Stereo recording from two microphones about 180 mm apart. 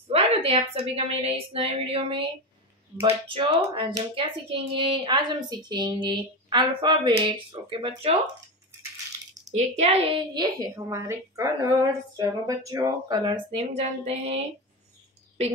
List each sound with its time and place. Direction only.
0.1 s a woman's voice: 35° right (ahead or behind)
9.5 s speech: 40° right (ahead or behind)